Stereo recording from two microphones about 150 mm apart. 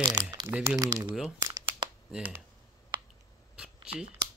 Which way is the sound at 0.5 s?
10° right (ahead or behind).